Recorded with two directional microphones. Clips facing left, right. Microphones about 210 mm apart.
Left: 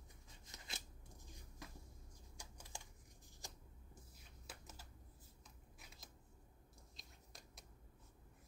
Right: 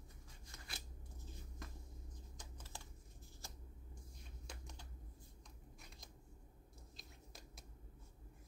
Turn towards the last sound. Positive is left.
turn(degrees=0)  # may be behind; listen again after turning